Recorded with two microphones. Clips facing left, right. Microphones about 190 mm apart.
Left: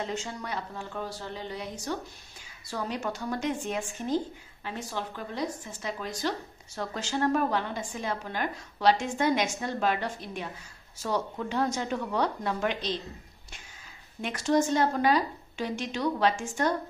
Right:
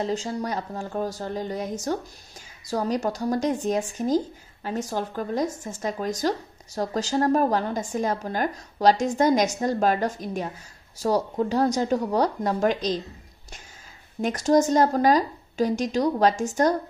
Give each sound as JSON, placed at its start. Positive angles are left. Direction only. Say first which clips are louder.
{"t": 0.0, "sound": "a woman's voice", "louder": "right 7 dB", "side_deg": -35}
{"t": 14.2, "sound": "a woman's voice", "louder": "right 6 dB", "side_deg": -40}